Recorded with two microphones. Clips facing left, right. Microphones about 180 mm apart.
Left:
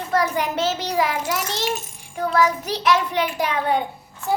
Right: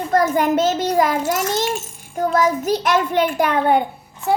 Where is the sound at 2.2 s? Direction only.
45° right (ahead or behind).